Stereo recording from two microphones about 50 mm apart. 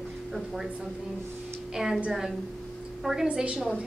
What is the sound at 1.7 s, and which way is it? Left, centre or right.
A woman's voice, centre.